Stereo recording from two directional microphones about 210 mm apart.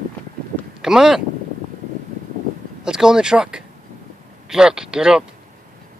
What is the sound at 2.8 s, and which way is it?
Speech, 5° right (ahead or behind).